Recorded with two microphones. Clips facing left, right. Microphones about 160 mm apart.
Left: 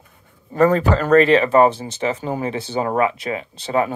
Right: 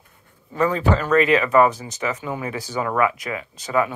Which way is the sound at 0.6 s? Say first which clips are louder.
Left 4 dB; 40° left (ahead or behind).